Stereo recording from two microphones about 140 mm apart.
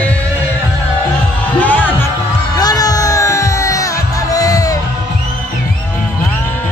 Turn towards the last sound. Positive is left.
turn(degrees=25)  # may be behind; listen again after turning